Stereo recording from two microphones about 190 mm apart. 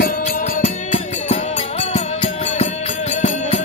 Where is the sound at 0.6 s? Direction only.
35° left (ahead or behind).